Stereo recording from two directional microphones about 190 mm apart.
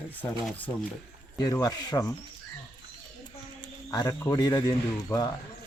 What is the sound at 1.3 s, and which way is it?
Speech, 20° left (ahead or behind).